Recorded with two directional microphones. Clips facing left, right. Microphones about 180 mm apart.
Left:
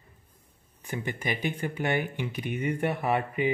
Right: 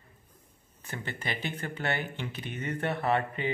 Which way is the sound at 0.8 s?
15° left (ahead or behind).